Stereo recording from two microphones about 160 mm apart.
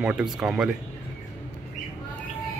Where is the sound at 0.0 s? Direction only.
5° right (ahead or behind).